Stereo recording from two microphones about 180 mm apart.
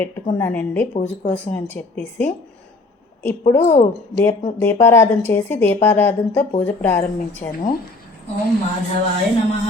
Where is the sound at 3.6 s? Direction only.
40° left (ahead or behind).